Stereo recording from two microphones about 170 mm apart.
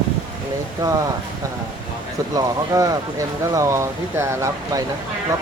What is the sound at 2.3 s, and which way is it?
Speech, 20° right (ahead or behind).